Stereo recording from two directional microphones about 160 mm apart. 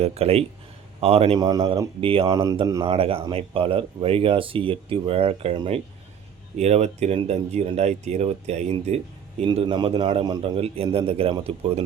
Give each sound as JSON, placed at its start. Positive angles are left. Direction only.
{"t": 0.0, "sound": "speech", "side_deg": -40}
{"t": 1.4, "sound": "a man's voice", "side_deg": -25}
{"t": 2.2, "sound": "a man's voice", "side_deg": -20}
{"t": 2.8, "sound": "a man's voice", "side_deg": -35}
{"t": 10.4, "sound": "speech", "side_deg": -40}